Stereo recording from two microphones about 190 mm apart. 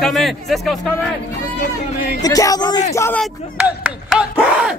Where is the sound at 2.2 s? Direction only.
20° left (ahead or behind).